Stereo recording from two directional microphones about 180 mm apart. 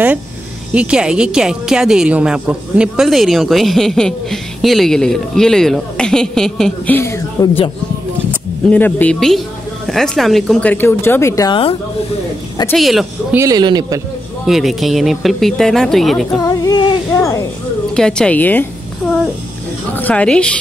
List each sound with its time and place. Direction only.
0.7 s a woman's voice: 5° right (ahead or behind)
7.4 s speech: 20° left (ahead or behind)
8.6 s speech: 10° left (ahead or behind)
12.7 s a woman's voice: centre (ahead or behind)
13.3 s speech: 15° right (ahead or behind)
14.4 s a woman's voice: centre (ahead or behind)
16.3 s a sound: 20° left (ahead or behind)
17.9 s speech: 5° left (ahead or behind)
20.0 s speech: 10° left (ahead or behind)